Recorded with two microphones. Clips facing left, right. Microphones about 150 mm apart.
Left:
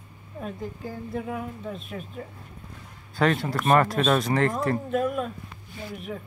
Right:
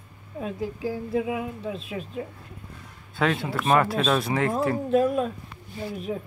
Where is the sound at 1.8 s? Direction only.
90° right.